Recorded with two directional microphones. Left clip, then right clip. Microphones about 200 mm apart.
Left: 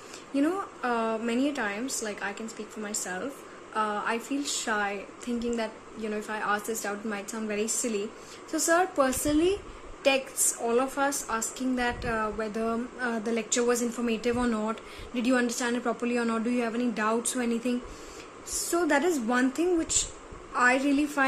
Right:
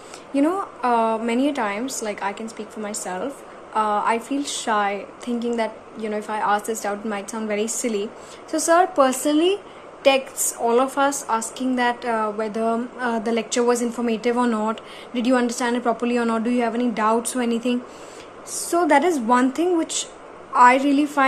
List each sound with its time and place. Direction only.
0.3 s a woman's voice: 15° left (ahead or behind)